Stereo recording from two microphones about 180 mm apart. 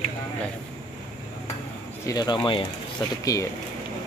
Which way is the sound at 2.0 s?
20° left (ahead or behind).